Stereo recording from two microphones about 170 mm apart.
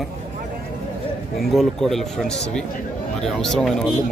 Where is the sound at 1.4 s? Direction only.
Centre (ahead or behind).